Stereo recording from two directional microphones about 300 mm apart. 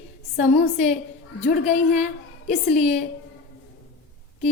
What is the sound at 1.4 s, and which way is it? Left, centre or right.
A woman's voice, left.